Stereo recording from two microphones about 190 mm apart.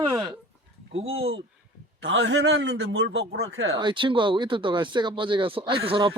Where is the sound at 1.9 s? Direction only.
75° right (ahead or behind).